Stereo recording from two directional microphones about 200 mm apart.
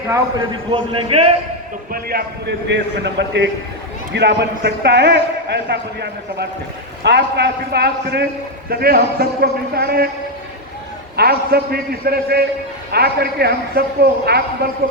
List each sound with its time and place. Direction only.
0.7 s a man's voice: 30° right (ahead or behind)
1.9 s a man's voice: 50° right (ahead or behind)
11.2 s a man's voice: 50° right (ahead or behind)